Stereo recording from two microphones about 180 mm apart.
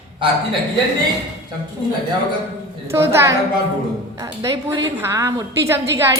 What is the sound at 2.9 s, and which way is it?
Speech, 15° right (ahead or behind).